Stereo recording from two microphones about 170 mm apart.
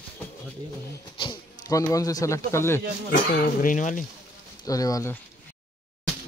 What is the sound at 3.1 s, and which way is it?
Speech, 55° left (ahead or behind).